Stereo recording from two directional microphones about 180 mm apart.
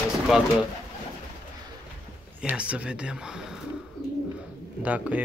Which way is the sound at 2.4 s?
5° right (ahead or behind).